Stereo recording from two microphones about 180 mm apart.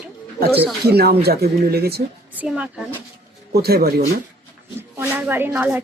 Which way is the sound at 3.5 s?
60° right (ahead or behind).